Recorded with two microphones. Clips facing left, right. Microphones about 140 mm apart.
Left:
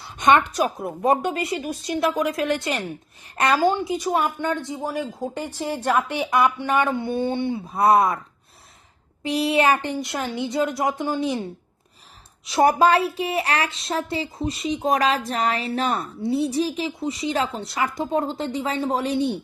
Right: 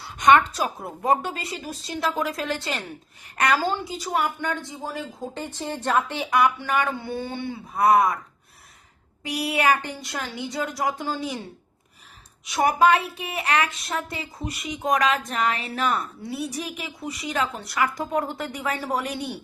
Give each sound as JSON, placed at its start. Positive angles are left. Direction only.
{"t": 0.0, "sound": "a woman's voice", "side_deg": 20}
{"t": 9.2, "sound": "a woman's voice", "side_deg": 25}
{"t": 12.5, "sound": "a woman's voice", "side_deg": 35}